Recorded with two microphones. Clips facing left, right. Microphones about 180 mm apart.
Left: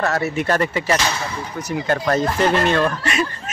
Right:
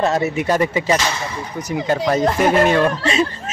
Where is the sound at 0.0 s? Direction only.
20° right (ahead or behind).